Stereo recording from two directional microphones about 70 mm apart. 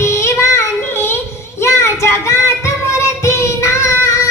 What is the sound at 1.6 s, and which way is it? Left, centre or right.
Child singing, left.